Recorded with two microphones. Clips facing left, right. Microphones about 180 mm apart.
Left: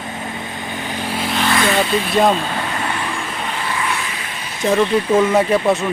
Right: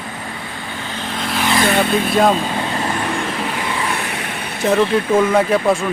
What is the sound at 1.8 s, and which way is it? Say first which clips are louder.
Speech: right 1 dB; 55° right (ahead or behind).